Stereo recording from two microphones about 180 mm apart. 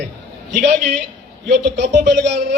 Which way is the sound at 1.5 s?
60° right (ahead or behind).